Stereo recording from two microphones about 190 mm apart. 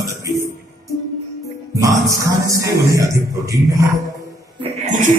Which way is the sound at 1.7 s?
15° right (ahead or behind).